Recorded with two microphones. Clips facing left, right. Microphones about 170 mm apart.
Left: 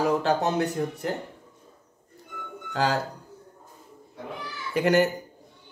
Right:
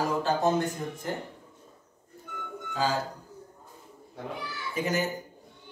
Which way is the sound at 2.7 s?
70° left (ahead or behind).